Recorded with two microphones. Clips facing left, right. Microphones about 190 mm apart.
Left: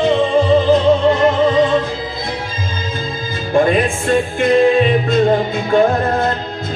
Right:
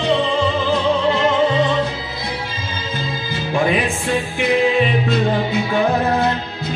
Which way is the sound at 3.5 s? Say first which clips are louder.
Left 5 dB; 50° left (ahead or behind).